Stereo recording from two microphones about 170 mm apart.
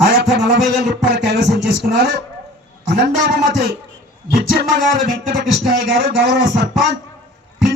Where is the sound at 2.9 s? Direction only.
70° right (ahead or behind).